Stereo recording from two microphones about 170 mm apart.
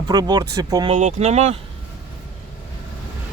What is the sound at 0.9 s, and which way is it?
Speech, 40° right (ahead or behind).